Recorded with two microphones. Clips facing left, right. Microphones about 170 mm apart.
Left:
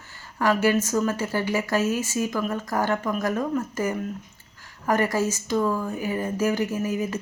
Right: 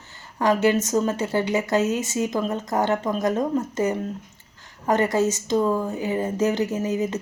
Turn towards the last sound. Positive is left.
turn(degrees=-20)  # may be behind; listen again after turning